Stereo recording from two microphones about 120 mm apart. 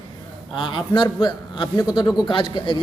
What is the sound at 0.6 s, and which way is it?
A man's voice, 45° left (ahead or behind).